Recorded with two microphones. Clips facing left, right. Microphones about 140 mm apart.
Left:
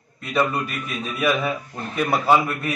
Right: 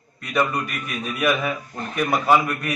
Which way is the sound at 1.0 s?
Centre (ahead or behind).